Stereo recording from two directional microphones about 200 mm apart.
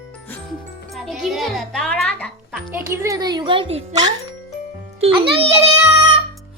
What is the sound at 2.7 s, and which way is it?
Speech, 15° right (ahead or behind).